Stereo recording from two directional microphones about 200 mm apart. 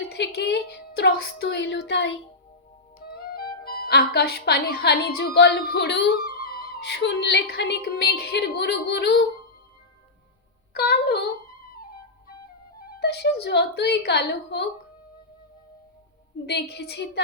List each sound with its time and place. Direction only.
0.1 s a woman's voice: 55° left (ahead or behind)
3.1 s music: 50° left (ahead or behind)
3.6 s a woman's voice: 50° left (ahead or behind)
10.8 s speech: 55° left (ahead or behind)
13.0 s a woman's voice: 55° left (ahead or behind)
16.5 s a woman's voice: 55° left (ahead or behind)